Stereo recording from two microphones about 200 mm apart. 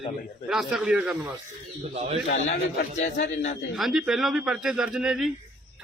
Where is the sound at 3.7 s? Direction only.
Centre (ahead or behind).